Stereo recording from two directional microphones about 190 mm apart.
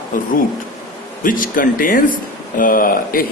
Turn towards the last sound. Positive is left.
turn(degrees=50)  # may be behind; listen again after turning